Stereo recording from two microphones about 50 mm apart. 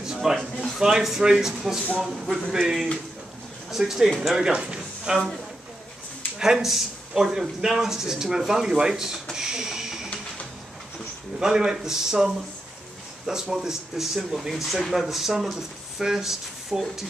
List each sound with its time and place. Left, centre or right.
0.0 s a sound: centre
0.7 s speech: centre
6.4 s speech: centre
11.3 s speech: centre